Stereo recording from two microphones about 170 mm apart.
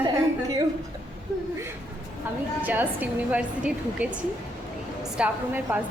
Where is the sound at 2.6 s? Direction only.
10° right (ahead or behind).